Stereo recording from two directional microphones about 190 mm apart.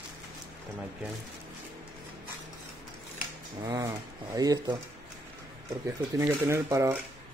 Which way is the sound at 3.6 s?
20° right (ahead or behind).